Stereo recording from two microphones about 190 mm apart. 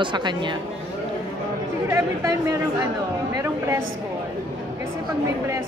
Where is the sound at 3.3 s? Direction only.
15° right (ahead or behind).